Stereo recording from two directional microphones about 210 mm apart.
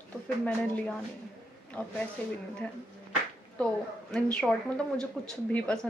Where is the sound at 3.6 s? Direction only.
5° left (ahead or behind).